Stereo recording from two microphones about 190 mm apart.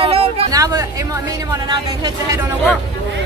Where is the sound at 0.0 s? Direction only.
30° right (ahead or behind).